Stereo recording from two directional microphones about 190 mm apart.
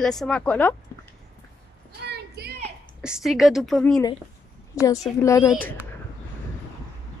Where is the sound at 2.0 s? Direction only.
60° right (ahead or behind).